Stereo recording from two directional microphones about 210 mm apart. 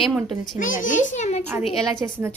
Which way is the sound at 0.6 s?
40° left (ahead or behind).